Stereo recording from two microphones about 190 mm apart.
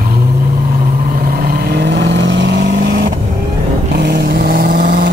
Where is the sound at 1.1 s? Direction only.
50° right (ahead or behind).